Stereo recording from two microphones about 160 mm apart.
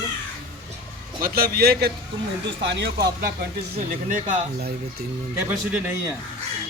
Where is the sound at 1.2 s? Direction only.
70° right (ahead or behind).